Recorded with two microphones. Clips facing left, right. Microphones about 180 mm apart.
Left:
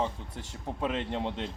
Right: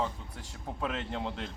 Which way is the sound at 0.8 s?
25° left (ahead or behind).